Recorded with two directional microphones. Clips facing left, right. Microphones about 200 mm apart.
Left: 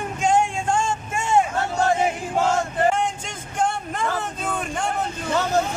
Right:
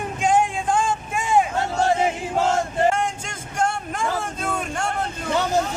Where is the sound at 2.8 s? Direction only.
Centre (ahead or behind).